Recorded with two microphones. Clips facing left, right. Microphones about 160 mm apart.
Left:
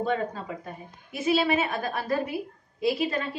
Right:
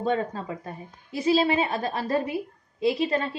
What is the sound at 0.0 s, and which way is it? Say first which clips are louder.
A woman's voice: right 2 dB; 35° right (ahead or behind).